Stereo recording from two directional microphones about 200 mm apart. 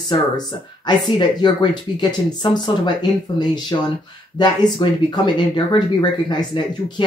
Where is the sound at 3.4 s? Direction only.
20° left (ahead or behind).